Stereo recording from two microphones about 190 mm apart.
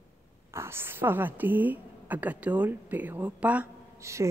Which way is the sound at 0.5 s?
15° right (ahead or behind).